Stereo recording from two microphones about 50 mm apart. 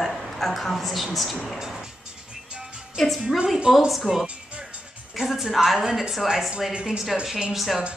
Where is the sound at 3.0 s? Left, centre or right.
Centre.